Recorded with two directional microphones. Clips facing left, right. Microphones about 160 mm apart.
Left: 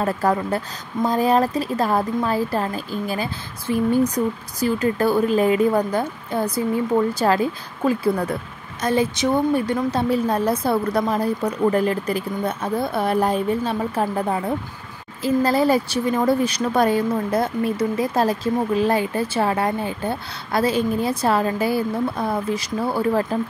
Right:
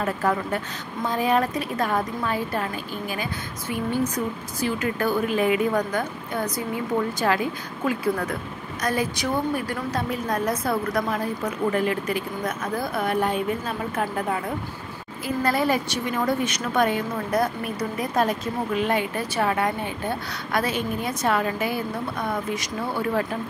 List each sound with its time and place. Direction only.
0.0 s a woman's voice: 35° left (ahead or behind)